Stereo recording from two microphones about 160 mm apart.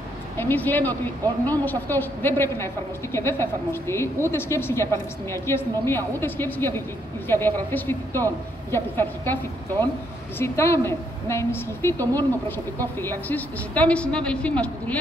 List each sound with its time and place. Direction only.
0.4 s a woman's voice: 10° left (ahead or behind)